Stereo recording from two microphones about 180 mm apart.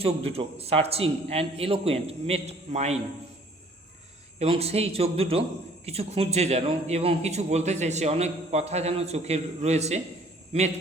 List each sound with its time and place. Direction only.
0.0 s a man's voice: 35° right (ahead or behind)
4.4 s a man's voice: 35° right (ahead or behind)